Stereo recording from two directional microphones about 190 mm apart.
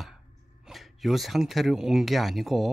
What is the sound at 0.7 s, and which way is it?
Speech, centre (ahead or behind).